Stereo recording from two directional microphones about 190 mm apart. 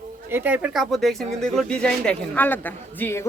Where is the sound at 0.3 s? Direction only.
10° right (ahead or behind).